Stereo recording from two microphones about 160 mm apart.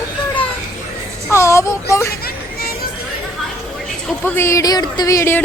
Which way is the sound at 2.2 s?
70° left (ahead or behind).